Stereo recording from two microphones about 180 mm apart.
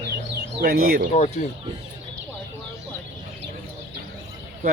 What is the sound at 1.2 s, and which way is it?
Speech, 40° left (ahead or behind).